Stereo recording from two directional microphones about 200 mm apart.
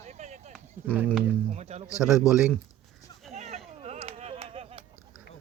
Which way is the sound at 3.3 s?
35° right (ahead or behind).